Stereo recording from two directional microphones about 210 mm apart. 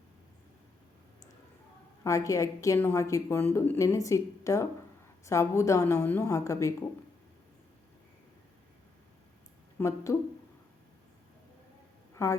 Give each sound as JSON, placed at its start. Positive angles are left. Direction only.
{"t": 2.0, "sound": "a woman's voice", "side_deg": 15}
{"t": 9.7, "sound": "a woman's voice", "side_deg": 15}
{"t": 12.1, "sound": "a sound", "side_deg": 15}